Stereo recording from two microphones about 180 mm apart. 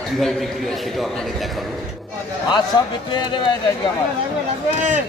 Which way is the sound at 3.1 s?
25° left (ahead or behind).